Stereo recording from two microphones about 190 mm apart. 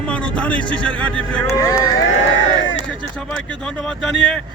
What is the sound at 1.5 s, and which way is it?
Speech, 15° left (ahead or behind).